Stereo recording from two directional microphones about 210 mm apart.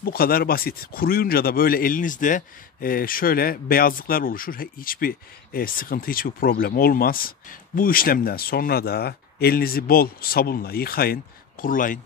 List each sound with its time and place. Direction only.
0.0 s speech: 45° left (ahead or behind)